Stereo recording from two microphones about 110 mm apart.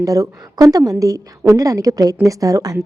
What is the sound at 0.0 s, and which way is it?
A woman's voice, 30° right (ahead or behind).